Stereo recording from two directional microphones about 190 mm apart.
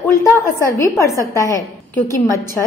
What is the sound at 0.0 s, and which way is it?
A woman's voice, 15° left (ahead or behind).